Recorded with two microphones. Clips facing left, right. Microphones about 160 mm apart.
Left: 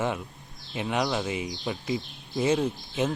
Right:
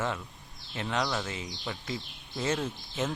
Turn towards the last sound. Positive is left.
turn(degrees=10)  # may be behind; listen again after turning